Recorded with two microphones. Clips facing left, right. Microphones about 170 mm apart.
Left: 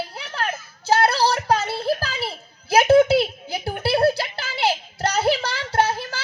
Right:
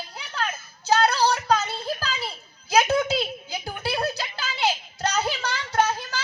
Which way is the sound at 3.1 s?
60° left (ahead or behind).